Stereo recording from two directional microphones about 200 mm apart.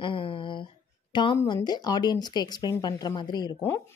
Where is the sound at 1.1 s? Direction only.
25° left (ahead or behind).